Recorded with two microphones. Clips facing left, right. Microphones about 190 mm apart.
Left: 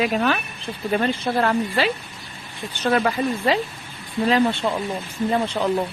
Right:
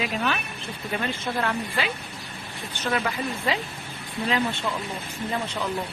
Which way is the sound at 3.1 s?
35° left (ahead or behind).